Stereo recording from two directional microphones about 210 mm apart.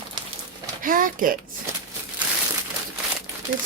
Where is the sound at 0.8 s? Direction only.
40° right (ahead or behind).